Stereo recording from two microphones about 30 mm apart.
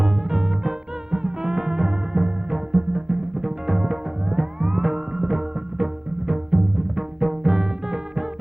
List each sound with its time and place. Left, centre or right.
0.0 s music: centre